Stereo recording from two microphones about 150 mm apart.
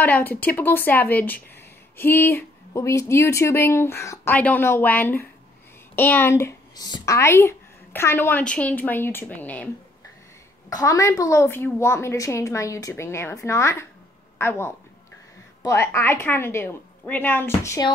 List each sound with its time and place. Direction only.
0.0 s speech: 10° left (ahead or behind)
10.7 s a woman's voice: 20° left (ahead or behind)